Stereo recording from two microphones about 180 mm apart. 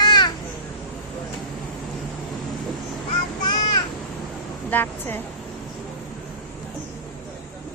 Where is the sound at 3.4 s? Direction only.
20° left (ahead or behind).